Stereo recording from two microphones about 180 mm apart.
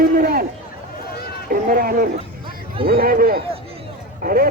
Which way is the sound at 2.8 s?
55° right (ahead or behind).